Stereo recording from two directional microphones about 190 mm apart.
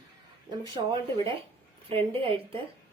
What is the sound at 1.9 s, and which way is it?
Speech, 30° right (ahead or behind).